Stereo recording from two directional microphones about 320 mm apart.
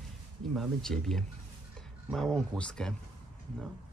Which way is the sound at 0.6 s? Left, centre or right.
Centre.